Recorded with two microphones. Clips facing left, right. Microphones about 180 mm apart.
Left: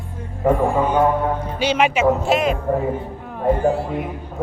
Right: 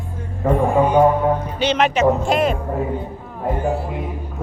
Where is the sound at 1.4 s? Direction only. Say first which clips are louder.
Even; 10° left (ahead or behind).